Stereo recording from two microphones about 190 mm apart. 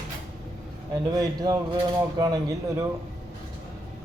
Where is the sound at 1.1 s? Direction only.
20° right (ahead or behind).